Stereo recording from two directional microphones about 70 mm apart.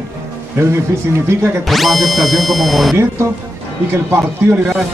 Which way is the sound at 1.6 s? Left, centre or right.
Centre.